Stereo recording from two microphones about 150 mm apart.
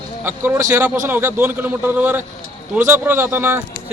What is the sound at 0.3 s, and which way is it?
Speech, 15° right (ahead or behind).